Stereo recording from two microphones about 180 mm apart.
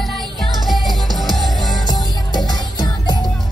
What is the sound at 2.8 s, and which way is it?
Music, 25° left (ahead or behind).